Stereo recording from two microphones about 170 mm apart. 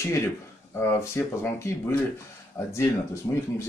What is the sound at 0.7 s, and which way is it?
Speech, 15° left (ahead or behind).